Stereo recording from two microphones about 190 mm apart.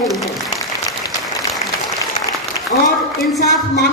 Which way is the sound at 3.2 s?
Centre (ahead or behind).